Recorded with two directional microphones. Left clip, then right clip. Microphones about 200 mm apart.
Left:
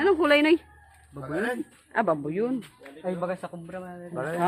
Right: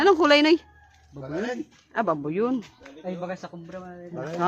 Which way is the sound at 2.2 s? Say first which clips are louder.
Right 2 dB; 10° right (ahead or behind).